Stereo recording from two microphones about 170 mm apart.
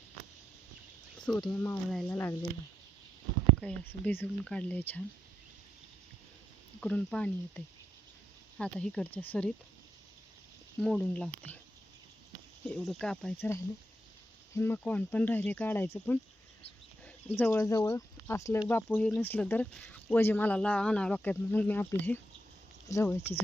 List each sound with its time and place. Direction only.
1.2 s speech: 5° left (ahead or behind)
3.6 s speech: 5° left (ahead or behind)
6.7 s speech: 5° left (ahead or behind)
10.8 s speech: 5° left (ahead or behind)
12.6 s speech: 5° left (ahead or behind)
13.3 s speech: 15° left (ahead or behind)